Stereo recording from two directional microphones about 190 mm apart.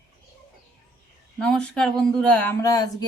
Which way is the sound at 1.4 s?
5° left (ahead or behind).